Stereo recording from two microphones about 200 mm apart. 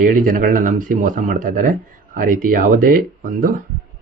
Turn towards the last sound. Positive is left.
turn(degrees=-45)  # may be behind; listen again after turning